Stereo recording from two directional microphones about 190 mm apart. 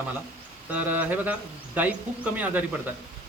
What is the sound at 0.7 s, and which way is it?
Speech, 10° right (ahead or behind).